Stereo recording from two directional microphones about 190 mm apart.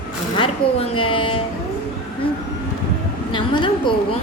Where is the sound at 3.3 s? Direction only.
25° left (ahead or behind).